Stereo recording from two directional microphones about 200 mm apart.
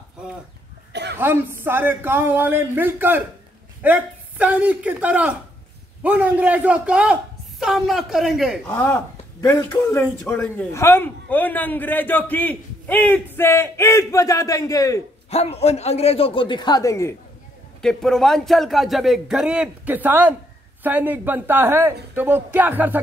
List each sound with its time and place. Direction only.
1.1 s a man's voice: 10° right (ahead or behind)
8.6 s a man's voice: 10° left (ahead or behind)
15.2 s a man's voice: 30° left (ahead or behind); by 17.1 s 15° left (ahead or behind)
17.8 s a man's voice: centre (ahead or behind)